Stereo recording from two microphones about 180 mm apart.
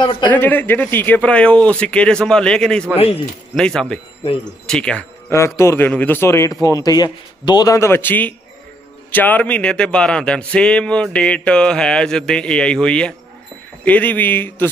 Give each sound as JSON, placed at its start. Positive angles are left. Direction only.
{"t": 0.0, "sound": "speech", "side_deg": 25}
{"t": 0.3, "sound": "speech", "side_deg": 10}